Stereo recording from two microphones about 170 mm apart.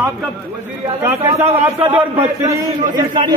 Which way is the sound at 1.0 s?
15° right (ahead or behind).